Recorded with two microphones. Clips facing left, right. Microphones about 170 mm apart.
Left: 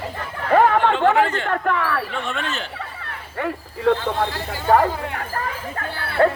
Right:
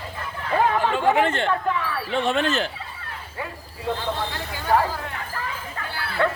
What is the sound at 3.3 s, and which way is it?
Speech, 70° left (ahead or behind).